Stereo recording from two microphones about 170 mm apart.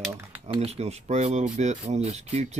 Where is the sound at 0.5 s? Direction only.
35° right (ahead or behind).